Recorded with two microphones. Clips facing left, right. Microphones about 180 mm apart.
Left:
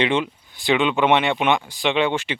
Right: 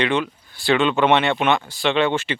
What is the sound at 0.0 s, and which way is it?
Speech, 25° left (ahead or behind).